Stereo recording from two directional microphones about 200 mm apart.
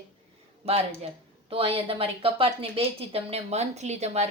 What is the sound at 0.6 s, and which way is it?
Speech, 30° right (ahead or behind).